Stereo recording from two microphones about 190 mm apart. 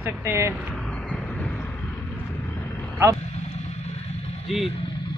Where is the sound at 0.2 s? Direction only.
15° right (ahead or behind).